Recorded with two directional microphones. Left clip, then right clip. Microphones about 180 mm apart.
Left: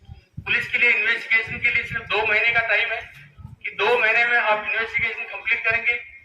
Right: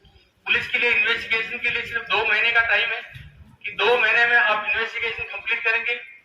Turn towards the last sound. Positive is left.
turn(degrees=-30)  # may be behind; listen again after turning